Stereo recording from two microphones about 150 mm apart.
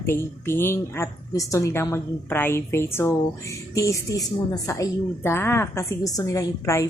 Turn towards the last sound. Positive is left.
turn(degrees=20)  # may be behind; listen again after turning